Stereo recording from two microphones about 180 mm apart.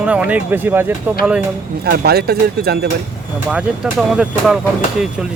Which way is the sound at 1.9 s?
60° right (ahead or behind).